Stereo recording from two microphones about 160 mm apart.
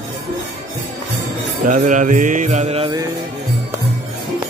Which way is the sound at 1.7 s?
55° right (ahead or behind).